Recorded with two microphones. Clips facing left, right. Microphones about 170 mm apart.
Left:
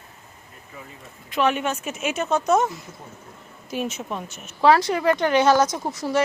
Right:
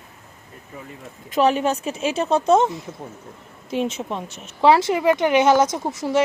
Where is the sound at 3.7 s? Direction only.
25° right (ahead or behind).